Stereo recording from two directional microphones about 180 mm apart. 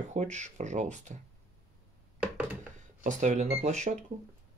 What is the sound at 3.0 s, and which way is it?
Speech, 45° right (ahead or behind).